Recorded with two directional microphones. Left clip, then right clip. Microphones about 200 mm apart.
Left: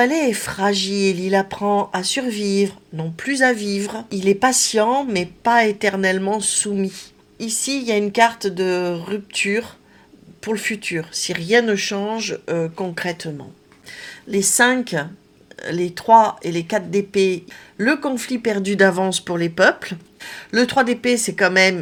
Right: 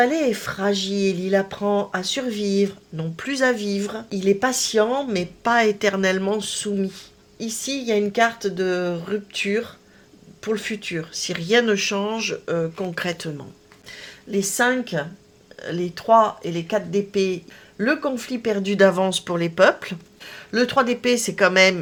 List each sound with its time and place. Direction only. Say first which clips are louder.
0.0 s speech: left 2 dB; 10° left (ahead or behind)